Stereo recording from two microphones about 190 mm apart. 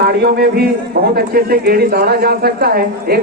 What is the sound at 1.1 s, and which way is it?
A woman's voice, 55° right (ahead or behind).